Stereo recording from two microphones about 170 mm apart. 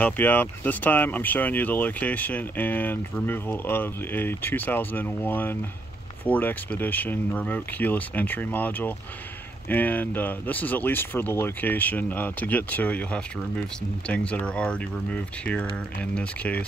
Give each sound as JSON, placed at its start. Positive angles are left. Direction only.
{"t": 0.0, "sound": "speech", "side_deg": 10}